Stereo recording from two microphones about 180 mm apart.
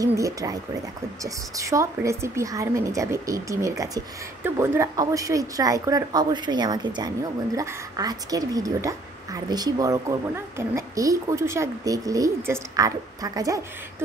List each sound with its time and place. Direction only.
0.0 s a woman's voice: 20° right (ahead or behind)